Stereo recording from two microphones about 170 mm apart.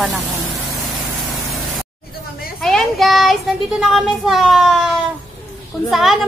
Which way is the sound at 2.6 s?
Centre (ahead or behind).